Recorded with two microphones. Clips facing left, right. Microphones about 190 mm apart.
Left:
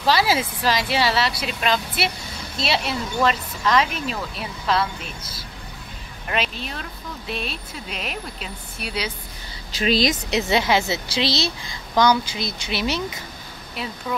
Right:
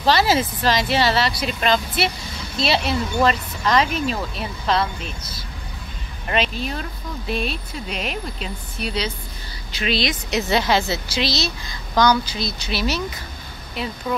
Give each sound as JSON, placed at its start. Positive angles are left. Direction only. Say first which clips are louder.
{"t": 0.0, "sound": "speech", "louder": "right 2 dB", "side_deg": 5}
{"t": 6.2, "sound": "speech", "louder": "right 4 dB", "side_deg": 0}
{"t": 9.8, "sound": "a woman's voice", "louder": "left 3 dB", "side_deg": 40}
{"t": 10.3, "sound": "speech", "louder": "right 2 dB", "side_deg": 20}
{"t": 13.8, "sound": "speech", "louder": "right 3 dB", "side_deg": 0}